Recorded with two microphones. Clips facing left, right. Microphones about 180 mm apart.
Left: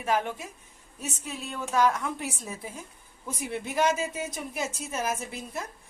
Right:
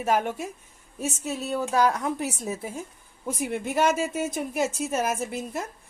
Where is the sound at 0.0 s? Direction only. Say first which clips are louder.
Right 3 dB; 45° right (ahead or behind).